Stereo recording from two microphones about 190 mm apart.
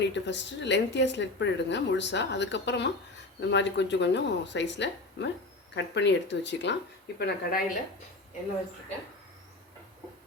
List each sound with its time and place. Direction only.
0.0 s a woman's voice: 70° left (ahead or behind)
7.2 s a woman's voice: 60° left (ahead or behind)